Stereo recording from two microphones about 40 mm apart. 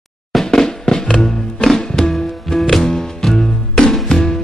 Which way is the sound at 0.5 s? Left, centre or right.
Centre.